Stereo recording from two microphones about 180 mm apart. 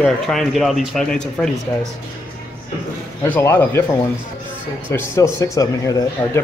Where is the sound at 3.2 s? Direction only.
10° left (ahead or behind).